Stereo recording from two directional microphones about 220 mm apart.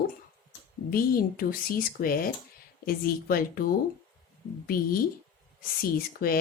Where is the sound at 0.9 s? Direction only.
40° left (ahead or behind).